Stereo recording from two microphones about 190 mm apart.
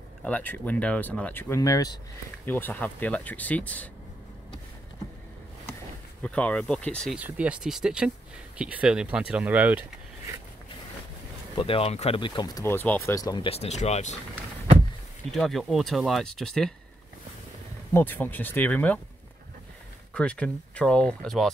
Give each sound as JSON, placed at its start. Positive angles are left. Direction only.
{"t": 0.2, "sound": "speech", "side_deg": 10}
{"t": 6.2, "sound": "speech", "side_deg": 5}
{"t": 7.2, "sound": "speech", "side_deg": -5}
{"t": 11.5, "sound": "speech", "side_deg": 30}
{"t": 12.6, "sound": "speech", "side_deg": 10}
{"t": 15.3, "sound": "speech", "side_deg": 0}
{"t": 17.9, "sound": "speech", "side_deg": 10}
{"t": 20.2, "sound": "speech", "side_deg": 5}